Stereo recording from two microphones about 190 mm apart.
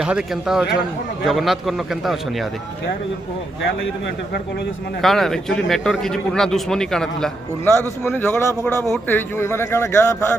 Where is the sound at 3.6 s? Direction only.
65° left (ahead or behind).